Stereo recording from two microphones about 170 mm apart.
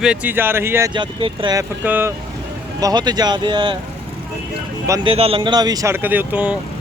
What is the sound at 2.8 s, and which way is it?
Speech, 25° right (ahead or behind).